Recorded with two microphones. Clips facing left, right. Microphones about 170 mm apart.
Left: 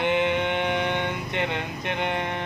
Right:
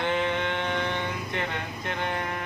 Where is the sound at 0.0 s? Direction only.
20° left (ahead or behind).